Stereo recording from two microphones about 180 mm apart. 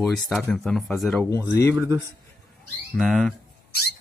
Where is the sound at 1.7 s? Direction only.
10° right (ahead or behind).